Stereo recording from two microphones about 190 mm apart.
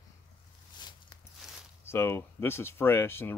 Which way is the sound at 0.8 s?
20° left (ahead or behind).